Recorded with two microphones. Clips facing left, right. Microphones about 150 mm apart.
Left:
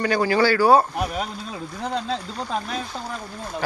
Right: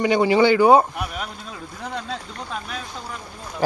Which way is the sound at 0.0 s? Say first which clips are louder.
Right 3 dB; 20° right (ahead or behind).